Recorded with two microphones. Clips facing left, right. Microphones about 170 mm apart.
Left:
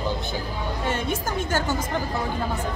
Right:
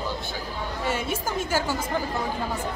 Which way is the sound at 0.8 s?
5° right (ahead or behind).